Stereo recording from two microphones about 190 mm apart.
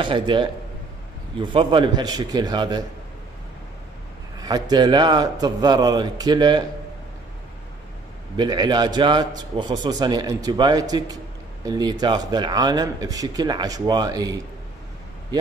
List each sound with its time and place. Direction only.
0.0 s a man's voice: 25° right (ahead or behind)
4.4 s a man's voice: 20° right (ahead or behind)
8.4 s a man's voice: 20° right (ahead or behind)